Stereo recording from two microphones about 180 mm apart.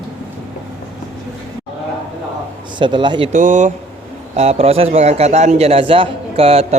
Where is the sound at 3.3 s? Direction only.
45° right (ahead or behind).